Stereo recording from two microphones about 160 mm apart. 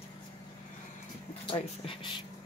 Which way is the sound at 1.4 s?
35° left (ahead or behind).